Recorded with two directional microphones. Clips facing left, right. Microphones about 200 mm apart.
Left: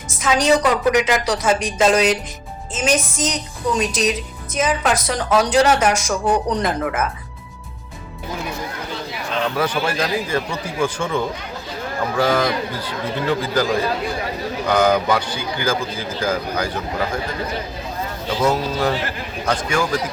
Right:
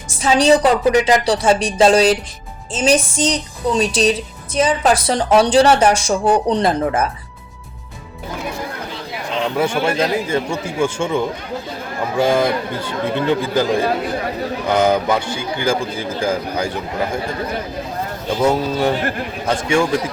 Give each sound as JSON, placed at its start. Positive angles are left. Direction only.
{"t": 0.2, "sound": "a woman's voice", "side_deg": -30}
{"t": 9.3, "sound": "speech", "side_deg": -25}
{"t": 18.5, "sound": "speech", "side_deg": -25}
{"t": 18.9, "sound": "a man's voice", "side_deg": -55}
{"t": 19.7, "sound": "speech", "side_deg": -25}